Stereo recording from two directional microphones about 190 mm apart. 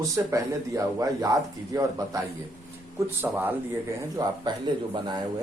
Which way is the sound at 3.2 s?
10° right (ahead or behind).